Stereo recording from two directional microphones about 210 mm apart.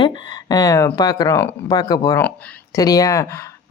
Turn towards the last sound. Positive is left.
turn(degrees=15)  # may be behind; listen again after turning